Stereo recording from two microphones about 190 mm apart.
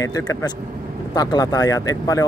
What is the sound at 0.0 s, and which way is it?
Speech, 15° left (ahead or behind).